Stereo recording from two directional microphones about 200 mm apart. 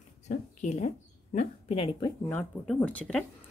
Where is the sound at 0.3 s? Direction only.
35° left (ahead or behind).